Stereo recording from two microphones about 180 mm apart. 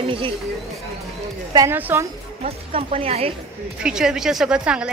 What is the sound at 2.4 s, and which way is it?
Speech, 35° right (ahead or behind).